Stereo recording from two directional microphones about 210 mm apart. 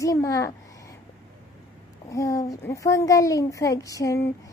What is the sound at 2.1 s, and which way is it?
A woman's voice, 15° left (ahead or behind).